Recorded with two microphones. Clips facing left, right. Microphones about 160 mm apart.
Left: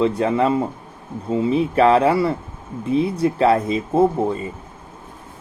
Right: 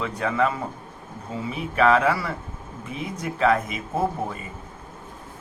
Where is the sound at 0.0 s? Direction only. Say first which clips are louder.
Left 6 dB; 30° left (ahead or behind).